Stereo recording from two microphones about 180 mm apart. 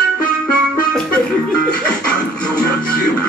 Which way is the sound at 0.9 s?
5° left (ahead or behind).